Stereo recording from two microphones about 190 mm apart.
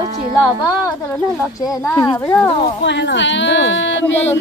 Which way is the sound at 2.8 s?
70° left (ahead or behind).